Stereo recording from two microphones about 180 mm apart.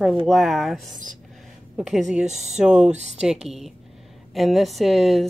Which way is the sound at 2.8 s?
40° right (ahead or behind).